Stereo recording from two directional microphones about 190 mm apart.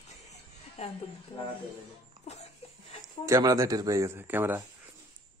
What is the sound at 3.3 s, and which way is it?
Speech, 20° right (ahead or behind).